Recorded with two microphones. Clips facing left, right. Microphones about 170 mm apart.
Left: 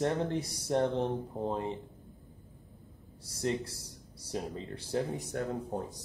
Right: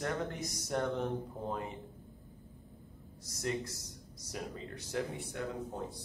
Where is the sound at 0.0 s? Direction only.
30° left (ahead or behind).